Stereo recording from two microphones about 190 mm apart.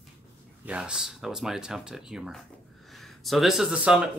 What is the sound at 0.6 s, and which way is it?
A man's voice, 5° right (ahead or behind).